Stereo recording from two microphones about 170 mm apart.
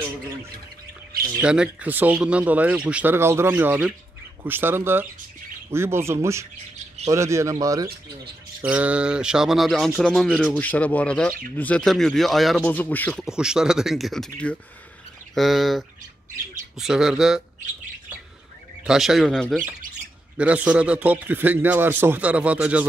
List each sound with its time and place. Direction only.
1.4 s speech: 5° right (ahead or behind)
8.5 s speech: 10° right (ahead or behind)
10.5 s speech: 10° left (ahead or behind)
13.2 s speech: 5° right (ahead or behind)
18.9 s speech: centre (ahead or behind)
20.3 s speech: 5° right (ahead or behind)